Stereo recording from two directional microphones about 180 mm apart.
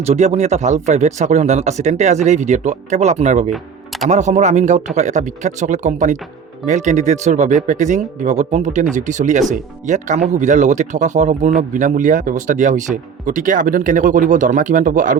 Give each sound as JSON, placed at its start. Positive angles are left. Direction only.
{"t": 0.0, "sound": "speech", "side_deg": -35}
{"t": 3.5, "sound": "music", "side_deg": 0}
{"t": 4.1, "sound": "speech", "side_deg": -40}